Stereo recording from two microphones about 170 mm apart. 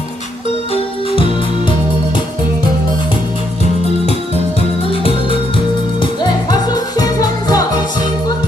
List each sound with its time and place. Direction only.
4.9 s music: 35° left (ahead or behind)